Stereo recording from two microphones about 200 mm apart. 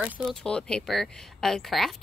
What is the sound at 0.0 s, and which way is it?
Speech, centre (ahead or behind).